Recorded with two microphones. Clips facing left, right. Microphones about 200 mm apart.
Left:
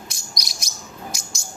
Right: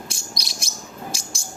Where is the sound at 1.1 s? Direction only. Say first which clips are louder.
Right 2 dB; 30° right (ahead or behind).